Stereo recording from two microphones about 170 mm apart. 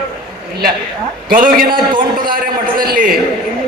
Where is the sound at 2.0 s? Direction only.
55° right (ahead or behind).